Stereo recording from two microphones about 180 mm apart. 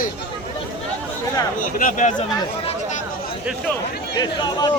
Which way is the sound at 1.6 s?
50° left (ahead or behind).